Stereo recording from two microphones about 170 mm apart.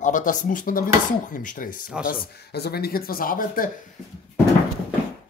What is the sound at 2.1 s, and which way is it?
Speech, 65° left (ahead or behind).